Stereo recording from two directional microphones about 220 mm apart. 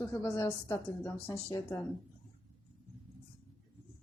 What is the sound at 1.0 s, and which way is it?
Speech, 10° left (ahead or behind).